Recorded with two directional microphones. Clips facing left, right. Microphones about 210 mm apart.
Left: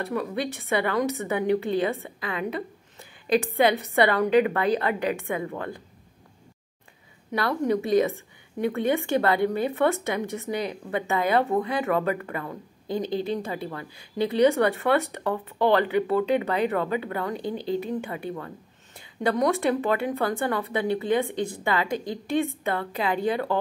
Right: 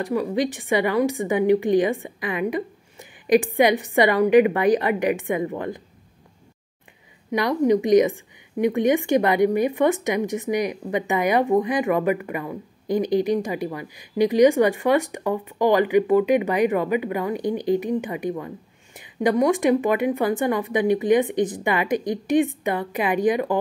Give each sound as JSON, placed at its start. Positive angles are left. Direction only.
{"t": 0.0, "sound": "speech", "side_deg": -15}
{"t": 7.2, "sound": "speech", "side_deg": -15}